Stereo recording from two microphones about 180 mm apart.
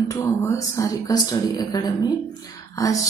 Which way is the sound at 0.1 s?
15° left (ahead or behind).